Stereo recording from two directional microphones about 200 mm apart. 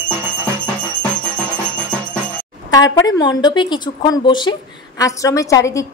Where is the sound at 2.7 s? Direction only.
20° left (ahead or behind).